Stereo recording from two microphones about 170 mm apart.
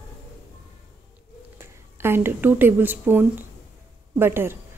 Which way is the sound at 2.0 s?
15° right (ahead or behind).